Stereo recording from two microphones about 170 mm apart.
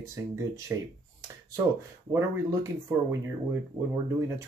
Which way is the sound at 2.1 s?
15° right (ahead or behind).